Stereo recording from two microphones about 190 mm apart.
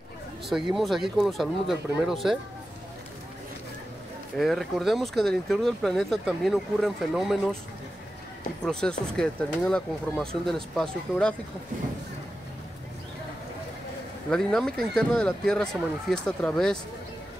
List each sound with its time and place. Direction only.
0.5 s speech: centre (ahead or behind)
4.4 s speech: centre (ahead or behind)
8.6 s speech: 5° left (ahead or behind)
14.3 s speech: 5° left (ahead or behind)